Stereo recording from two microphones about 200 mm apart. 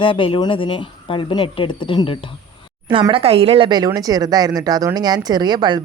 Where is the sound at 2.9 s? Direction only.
25° right (ahead or behind).